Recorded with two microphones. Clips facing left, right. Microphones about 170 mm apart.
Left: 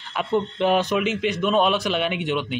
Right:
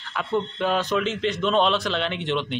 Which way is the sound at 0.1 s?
20° left (ahead or behind).